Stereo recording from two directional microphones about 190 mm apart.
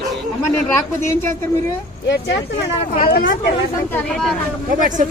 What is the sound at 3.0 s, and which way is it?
Speech, 50° left (ahead or behind).